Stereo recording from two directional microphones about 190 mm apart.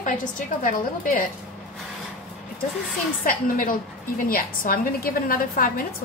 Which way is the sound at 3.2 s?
45° left (ahead or behind).